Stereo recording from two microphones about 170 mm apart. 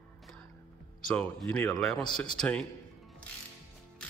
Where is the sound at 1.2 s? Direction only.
5° left (ahead or behind).